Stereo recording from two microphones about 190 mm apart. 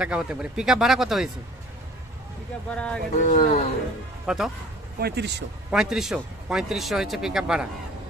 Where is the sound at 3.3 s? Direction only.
45° left (ahead or behind).